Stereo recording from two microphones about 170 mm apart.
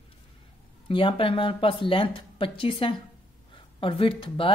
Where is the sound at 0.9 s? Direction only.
30° left (ahead or behind).